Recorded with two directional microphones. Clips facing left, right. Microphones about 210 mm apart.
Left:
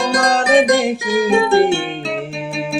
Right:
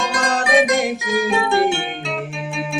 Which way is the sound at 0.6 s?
35° left (ahead or behind).